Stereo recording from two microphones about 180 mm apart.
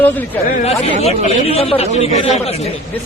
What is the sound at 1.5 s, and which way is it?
Speech, 35° left (ahead or behind).